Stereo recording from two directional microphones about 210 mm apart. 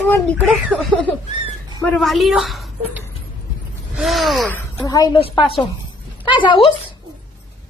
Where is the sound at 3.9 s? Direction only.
Centre (ahead or behind).